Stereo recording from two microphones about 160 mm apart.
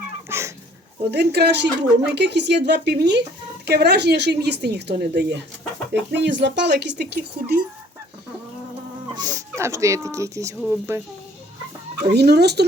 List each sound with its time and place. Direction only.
0.3 s dog: 15° right (ahead or behind)
1.1 s a woman's voice: 90° right
9.1 s speech: 25° right (ahead or behind)
12.1 s a woman's voice: 90° right